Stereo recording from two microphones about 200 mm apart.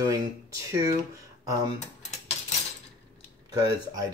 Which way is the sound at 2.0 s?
35° left (ahead or behind).